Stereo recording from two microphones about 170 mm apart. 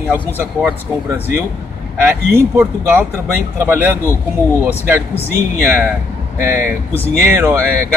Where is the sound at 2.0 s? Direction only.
10° right (ahead or behind).